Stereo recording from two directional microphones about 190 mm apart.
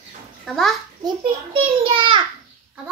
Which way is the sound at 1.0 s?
30° right (ahead or behind).